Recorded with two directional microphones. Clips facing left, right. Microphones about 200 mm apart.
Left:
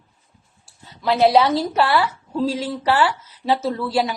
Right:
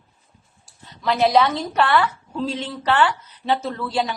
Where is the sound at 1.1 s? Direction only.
30° left (ahead or behind).